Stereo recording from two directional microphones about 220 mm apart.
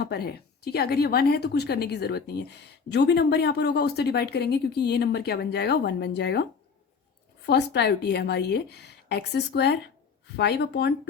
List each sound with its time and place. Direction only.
0.0 s a woman's voice: 45° left (ahead or behind)